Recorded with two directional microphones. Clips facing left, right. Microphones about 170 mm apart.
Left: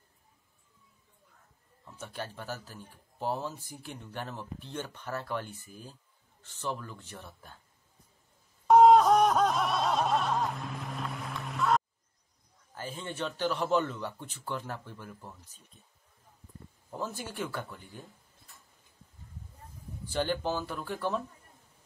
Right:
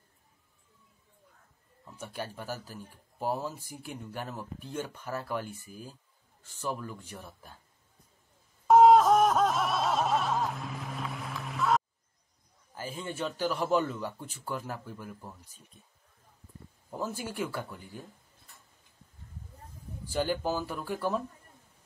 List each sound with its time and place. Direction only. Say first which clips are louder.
1.9 s speech: right 1 dB; 10° right (ahead or behind)
8.6 s music: even; centre (ahead or behind)
12.7 s speech: right 1 dB; 10° right (ahead or behind)
16.9 s speech: right 2 dB; 10° right (ahead or behind)
20.1 s speech: right 1 dB; 10° right (ahead or behind)